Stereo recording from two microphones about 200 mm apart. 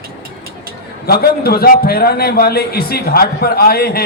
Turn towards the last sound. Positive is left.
turn(degrees=50)  # may be behind; listen again after turning